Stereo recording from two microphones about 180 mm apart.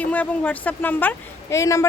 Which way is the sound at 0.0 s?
10° left (ahead or behind).